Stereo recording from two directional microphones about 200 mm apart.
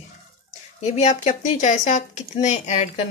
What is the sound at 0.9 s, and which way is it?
Speech, 35° left (ahead or behind).